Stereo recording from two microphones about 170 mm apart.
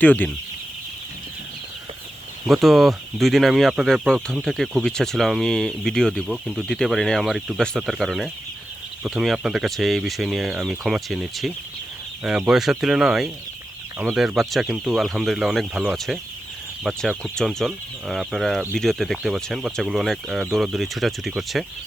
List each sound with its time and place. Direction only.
0.0 s speech: 10° left (ahead or behind)
2.5 s speech: centre (ahead or behind)